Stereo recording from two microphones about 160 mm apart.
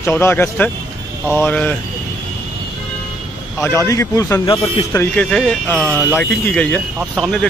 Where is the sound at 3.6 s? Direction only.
20° left (ahead or behind).